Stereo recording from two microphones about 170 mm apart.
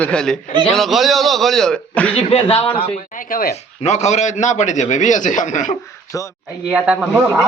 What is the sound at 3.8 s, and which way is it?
A man's voice, 40° left (ahead or behind).